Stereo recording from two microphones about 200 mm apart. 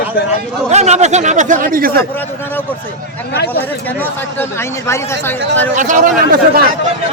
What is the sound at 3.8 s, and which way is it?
Speech, 10° left (ahead or behind).